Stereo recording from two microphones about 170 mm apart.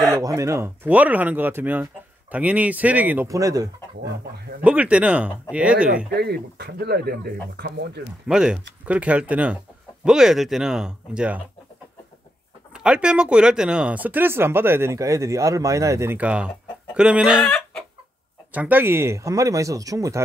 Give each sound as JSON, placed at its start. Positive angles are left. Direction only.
{"t": 0.1, "sound": "speech", "side_deg": -20}
{"t": 4.6, "sound": "speech", "side_deg": -10}
{"t": 6.1, "sound": "speech", "side_deg": -70}
{"t": 8.3, "sound": "speech", "side_deg": -5}
{"t": 12.7, "sound": "speech", "side_deg": -5}
{"t": 18.5, "sound": "speech", "side_deg": -10}